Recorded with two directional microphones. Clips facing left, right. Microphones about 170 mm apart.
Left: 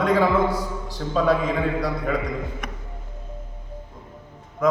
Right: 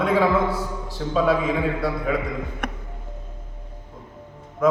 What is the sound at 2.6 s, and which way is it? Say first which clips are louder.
Music: right 5 dB; 65° right (ahead or behind).